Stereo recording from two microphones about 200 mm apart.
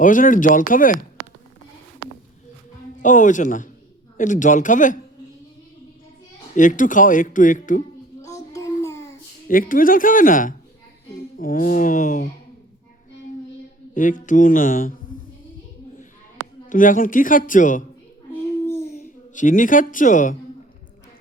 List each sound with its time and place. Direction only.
0.0 s speech: 40° left (ahead or behind)
3.0 s speech: 40° left (ahead or behind)
6.6 s speech: 40° left (ahead or behind)
8.2 s child singing: 15° left (ahead or behind)
9.5 s speech: 45° left (ahead or behind)
13.9 s speech: 40° left (ahead or behind)
16.6 s speech: 40° left (ahead or behind)
18.6 s a sound: 10° left (ahead or behind)
18.9 s a woman's voice: 40° left (ahead or behind)